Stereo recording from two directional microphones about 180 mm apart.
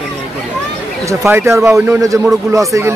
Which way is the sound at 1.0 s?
15° right (ahead or behind).